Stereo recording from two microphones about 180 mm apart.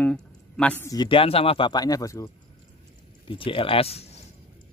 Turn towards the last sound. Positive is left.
turn(degrees=35)  # may be behind; listen again after turning